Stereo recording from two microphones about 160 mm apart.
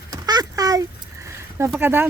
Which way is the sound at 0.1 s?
25° right (ahead or behind).